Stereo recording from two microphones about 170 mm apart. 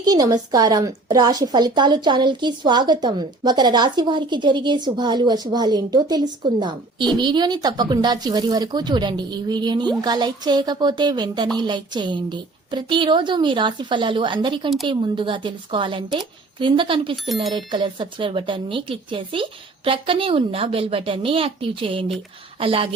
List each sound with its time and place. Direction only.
0.0 s a woman's voice: 20° right (ahead or behind)